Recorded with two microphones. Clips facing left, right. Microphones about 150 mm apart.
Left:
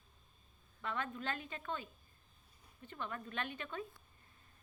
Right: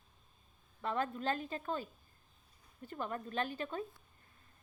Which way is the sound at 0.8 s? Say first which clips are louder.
Right 5 dB; 35° right (ahead or behind).